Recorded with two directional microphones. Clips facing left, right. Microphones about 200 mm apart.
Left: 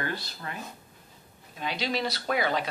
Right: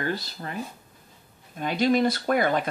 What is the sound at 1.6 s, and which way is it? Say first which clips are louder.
Speech: right 8 dB; 50° right (ahead or behind).